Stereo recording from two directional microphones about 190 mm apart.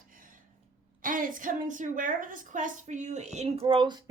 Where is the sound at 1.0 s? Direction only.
45° right (ahead or behind).